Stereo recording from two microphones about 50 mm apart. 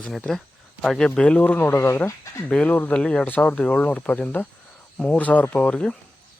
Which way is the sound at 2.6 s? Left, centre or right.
Left.